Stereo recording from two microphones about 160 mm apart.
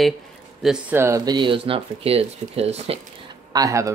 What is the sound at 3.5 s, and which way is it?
Speech, 20° right (ahead or behind).